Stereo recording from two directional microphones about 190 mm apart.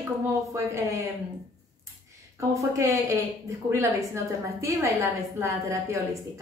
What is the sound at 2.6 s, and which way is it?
Speech, 15° right (ahead or behind).